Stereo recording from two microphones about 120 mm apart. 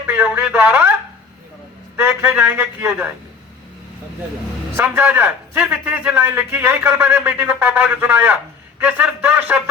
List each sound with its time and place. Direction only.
0.0 s speech: 15° right (ahead or behind)
2.0 s a man's voice: 15° right (ahead or behind)
4.8 s a man's voice: 15° right (ahead or behind)